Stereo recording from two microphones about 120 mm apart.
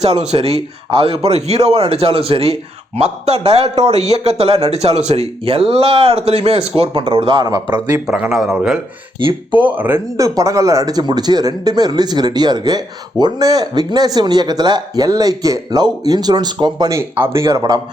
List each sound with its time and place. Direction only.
0.0 s a man's voice: 60° right (ahead or behind)
8.0 s a man's voice: 5° right (ahead or behind)
9.1 s speech: 45° right (ahead or behind)
9.6 s speech: 15° right (ahead or behind)
10.2 s speech: 30° right (ahead or behind)
17.0 s speech: 20° right (ahead or behind)